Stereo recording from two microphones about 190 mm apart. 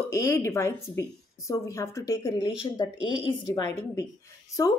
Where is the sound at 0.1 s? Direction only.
15° left (ahead or behind).